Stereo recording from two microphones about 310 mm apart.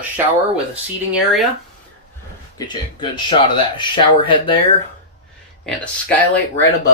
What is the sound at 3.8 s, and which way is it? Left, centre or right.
Speech, centre.